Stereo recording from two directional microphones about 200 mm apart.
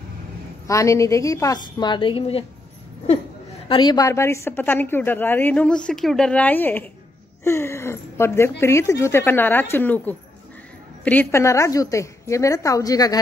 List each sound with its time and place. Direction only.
0.7 s a woman's voice: 15° left (ahead or behind)
3.6 s a woman's voice: 25° left (ahead or behind)